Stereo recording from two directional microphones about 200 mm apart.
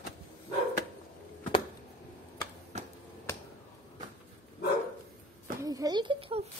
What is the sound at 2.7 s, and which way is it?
Finger snapping, 35° right (ahead or behind).